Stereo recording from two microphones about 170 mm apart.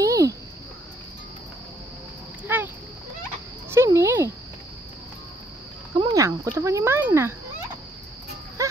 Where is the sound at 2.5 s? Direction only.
10° right (ahead or behind).